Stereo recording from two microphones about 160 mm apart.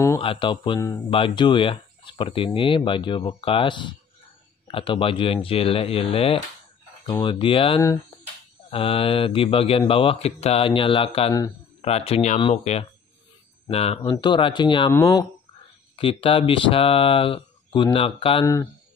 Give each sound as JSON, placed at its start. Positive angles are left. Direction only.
{"t": 0.2, "sound": "speech", "side_deg": 30}
{"t": 0.7, "sound": "speech", "side_deg": 15}
{"t": 1.1, "sound": "speech", "side_deg": 30}
{"t": 14.1, "sound": "speech", "side_deg": 30}
{"t": 16.0, "sound": "speech", "side_deg": 35}